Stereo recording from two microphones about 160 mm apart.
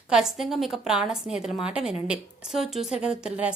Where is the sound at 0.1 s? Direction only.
5° right (ahead or behind).